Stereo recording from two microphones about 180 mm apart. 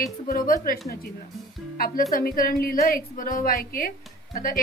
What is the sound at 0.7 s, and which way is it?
A woman's voice, 50° left (ahead or behind).